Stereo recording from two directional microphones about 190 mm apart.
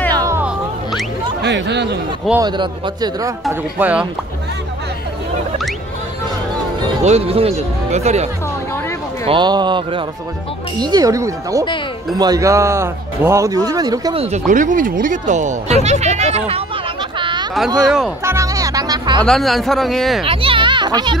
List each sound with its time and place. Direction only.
0.2 s music: 10° right (ahead or behind)
1.4 s speech: 65° right (ahead or behind)
2.3 s speech: 25° right (ahead or behind)
3.4 s speech: 10° right (ahead or behind)
7.0 s speech: 35° right (ahead or behind)
9.2 s speech: 25° right (ahead or behind)
14.1 s speech: 35° right (ahead or behind)
14.5 s speech: 45° right (ahead or behind)
17.2 s a sound: 25° right (ahead or behind)
17.8 s speech: centre (ahead or behind)
18.2 s music: 15° right (ahead or behind)
19.2 s speech: centre (ahead or behind)
20.2 s a child's voice: 25° right (ahead or behind)